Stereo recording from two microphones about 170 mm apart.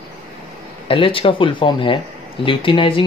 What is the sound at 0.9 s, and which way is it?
Speech, 30° left (ahead or behind).